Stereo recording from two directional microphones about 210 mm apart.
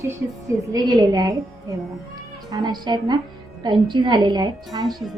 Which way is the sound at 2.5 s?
20° right (ahead or behind).